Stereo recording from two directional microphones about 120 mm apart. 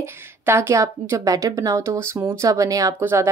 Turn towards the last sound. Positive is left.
turn(degrees=-20)  # may be behind; listen again after turning